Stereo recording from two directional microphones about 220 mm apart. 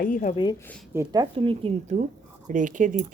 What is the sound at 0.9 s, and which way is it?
Speech, 20° right (ahead or behind).